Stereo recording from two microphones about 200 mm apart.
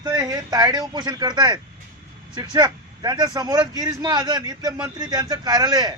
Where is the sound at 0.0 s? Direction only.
15° right (ahead or behind).